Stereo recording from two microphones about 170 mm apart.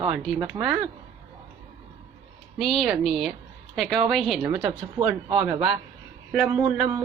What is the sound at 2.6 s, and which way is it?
A woman's voice, centre (ahead or behind).